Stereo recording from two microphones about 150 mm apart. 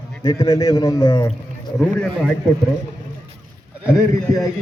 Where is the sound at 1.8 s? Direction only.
5° left (ahead or behind).